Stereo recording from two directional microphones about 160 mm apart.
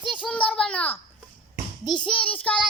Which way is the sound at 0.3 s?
5° left (ahead or behind).